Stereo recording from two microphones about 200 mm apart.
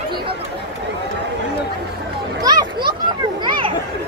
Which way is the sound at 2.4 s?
20° right (ahead or behind).